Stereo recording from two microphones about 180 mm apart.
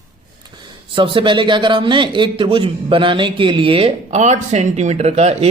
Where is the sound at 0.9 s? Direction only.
30° right (ahead or behind).